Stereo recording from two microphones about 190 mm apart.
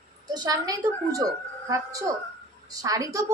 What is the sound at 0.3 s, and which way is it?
A woman's voice, 20° right (ahead or behind).